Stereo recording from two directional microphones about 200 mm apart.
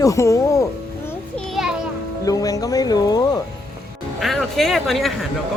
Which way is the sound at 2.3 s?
15° left (ahead or behind).